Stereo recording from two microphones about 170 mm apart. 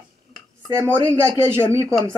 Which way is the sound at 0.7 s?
15° right (ahead or behind).